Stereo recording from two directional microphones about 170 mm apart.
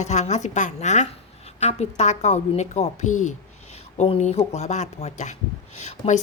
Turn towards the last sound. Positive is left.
turn(degrees=40)  # may be behind; listen again after turning